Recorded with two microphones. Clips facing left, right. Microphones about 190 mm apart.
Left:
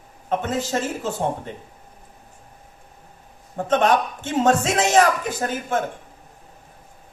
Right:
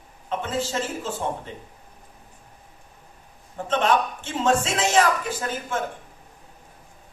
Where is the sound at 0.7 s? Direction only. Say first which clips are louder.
Left 4 dB; 45° left (ahead or behind).